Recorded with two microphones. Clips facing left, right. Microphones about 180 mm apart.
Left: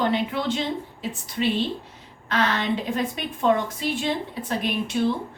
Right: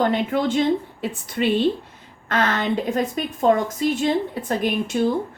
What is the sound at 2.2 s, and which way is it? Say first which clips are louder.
A woman's voice: right 2 dB; 50° right (ahead or behind).